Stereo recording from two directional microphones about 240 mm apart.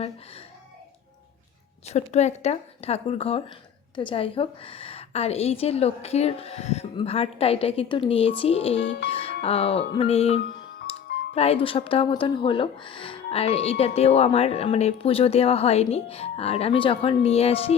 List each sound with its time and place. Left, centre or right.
1.9 s a woman's voice: left
8.8 s speech: left
9.0 s a woman's voice: left
10.9 s music: left
11.3 s a woman's voice: left